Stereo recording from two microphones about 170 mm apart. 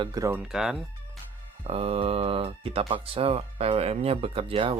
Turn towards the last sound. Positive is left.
turn(degrees=-35)  # may be behind; listen again after turning